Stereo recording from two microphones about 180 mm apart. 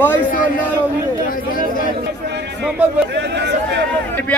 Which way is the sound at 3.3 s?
70° right (ahead or behind).